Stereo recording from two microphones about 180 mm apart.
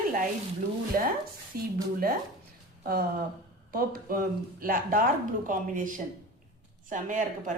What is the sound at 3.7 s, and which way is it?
Speech, 55° right (ahead or behind).